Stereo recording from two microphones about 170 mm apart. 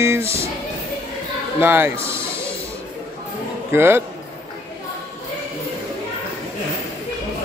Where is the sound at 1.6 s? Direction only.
15° right (ahead or behind).